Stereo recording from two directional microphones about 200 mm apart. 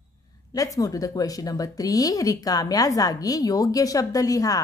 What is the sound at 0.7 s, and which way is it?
Speech, 15° left (ahead or behind).